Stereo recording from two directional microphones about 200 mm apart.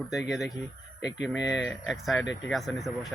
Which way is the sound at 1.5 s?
Centre (ahead or behind).